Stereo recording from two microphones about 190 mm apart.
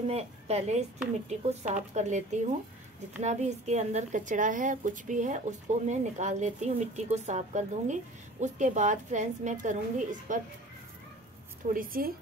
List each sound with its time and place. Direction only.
0.1 s a woman's voice: 35° right (ahead or behind)
11.7 s a woman's voice: 45° right (ahead or behind)